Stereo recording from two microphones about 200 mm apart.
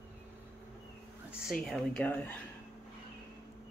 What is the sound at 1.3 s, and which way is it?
Speech, centre (ahead or behind).